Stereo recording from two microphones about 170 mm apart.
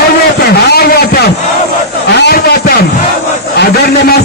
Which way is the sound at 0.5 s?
70° left (ahead or behind).